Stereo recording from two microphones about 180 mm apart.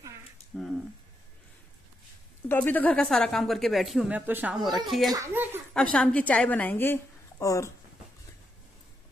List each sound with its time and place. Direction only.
2.4 s a woman's voice: 10° left (ahead or behind)
5.1 s a child's voice: 15° right (ahead or behind)
5.7 s a woman's voice: 5° left (ahead or behind)